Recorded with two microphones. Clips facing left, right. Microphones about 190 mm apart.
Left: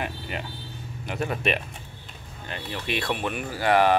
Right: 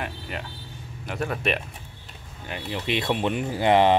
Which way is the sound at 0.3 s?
Centre (ahead or behind).